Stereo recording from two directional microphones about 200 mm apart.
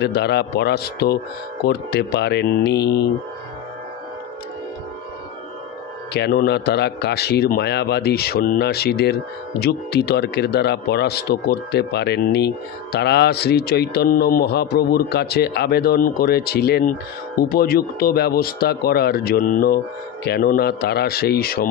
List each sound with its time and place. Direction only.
0.0 s speech: 55° left (ahead or behind)
6.1 s speech: 55° left (ahead or behind)